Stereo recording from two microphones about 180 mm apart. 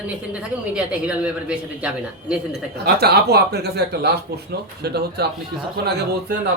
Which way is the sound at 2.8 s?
65° right (ahead or behind).